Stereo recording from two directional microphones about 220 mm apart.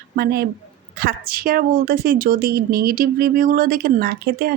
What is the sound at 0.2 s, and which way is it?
A woman's voice, 45° right (ahead or behind).